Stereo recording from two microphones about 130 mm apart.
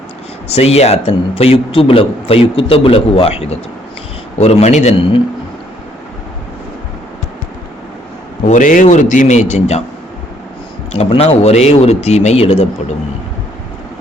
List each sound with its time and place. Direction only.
0.4 s a man's voice: 50° left (ahead or behind)
8.4 s a man's voice: 85° left; by 9.8 s 60° left (ahead or behind)
10.9 s speech: 50° left (ahead or behind)